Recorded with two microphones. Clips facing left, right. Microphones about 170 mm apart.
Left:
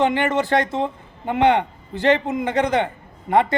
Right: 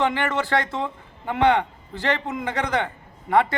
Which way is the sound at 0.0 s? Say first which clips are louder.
Left 4 dB; 20° left (ahead or behind).